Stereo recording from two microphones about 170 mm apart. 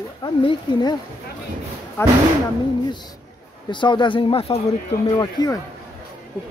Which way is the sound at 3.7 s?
30° left (ahead or behind).